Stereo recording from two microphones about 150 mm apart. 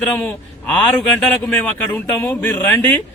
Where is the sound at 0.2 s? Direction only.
5° left (ahead or behind).